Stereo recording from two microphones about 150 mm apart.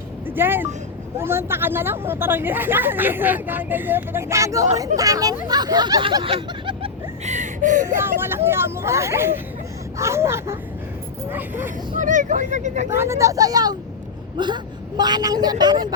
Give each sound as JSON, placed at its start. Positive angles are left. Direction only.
{"t": 0.3, "sound": "speech", "side_deg": -15}
{"t": 5.5, "sound": "snicker", "side_deg": -25}
{"t": 7.3, "sound": "whimper", "side_deg": -55}
{"t": 8.4, "sound": "speech", "side_deg": -15}
{"t": 11.9, "sound": "speech", "side_deg": -60}
{"t": 12.9, "sound": "speech", "side_deg": -20}